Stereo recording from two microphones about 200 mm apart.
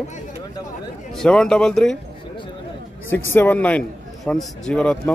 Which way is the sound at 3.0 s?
10° left (ahead or behind).